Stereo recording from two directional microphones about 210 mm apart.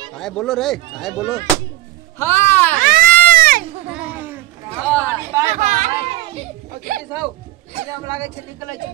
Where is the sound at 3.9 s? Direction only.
5° right (ahead or behind).